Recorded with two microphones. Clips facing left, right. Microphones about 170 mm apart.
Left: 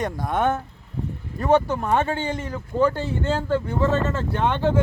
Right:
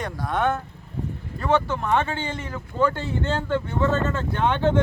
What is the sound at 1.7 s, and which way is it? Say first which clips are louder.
Speech: left 1 dB; 15° left (ahead or behind).